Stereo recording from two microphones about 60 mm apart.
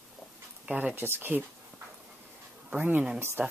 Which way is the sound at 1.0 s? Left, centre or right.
Right.